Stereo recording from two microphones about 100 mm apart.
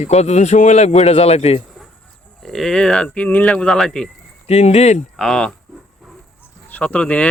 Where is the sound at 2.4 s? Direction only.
5° left (ahead or behind).